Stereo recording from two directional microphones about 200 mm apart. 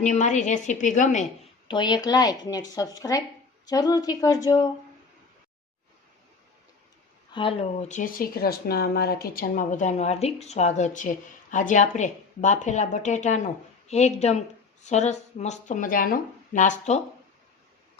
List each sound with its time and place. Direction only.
0.0 s speech: 35° left (ahead or behind)
1.6 s a woman's voice: 25° left (ahead or behind)
7.3 s speech: 25° left (ahead or behind)